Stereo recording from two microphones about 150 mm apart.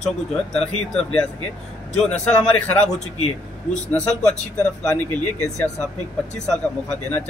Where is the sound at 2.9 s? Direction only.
45° left (ahead or behind).